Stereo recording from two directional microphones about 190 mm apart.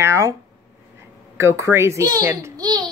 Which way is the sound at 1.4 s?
15° right (ahead or behind).